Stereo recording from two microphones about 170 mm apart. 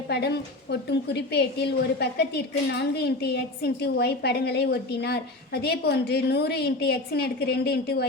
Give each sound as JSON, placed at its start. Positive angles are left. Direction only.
{"t": 0.1, "sound": "a woman's voice", "side_deg": 75}